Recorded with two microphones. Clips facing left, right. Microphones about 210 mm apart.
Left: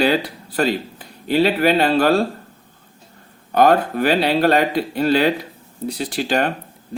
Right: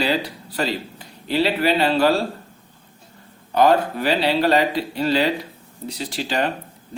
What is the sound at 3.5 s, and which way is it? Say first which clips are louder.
Speech: left 2 dB; 50° left (ahead or behind).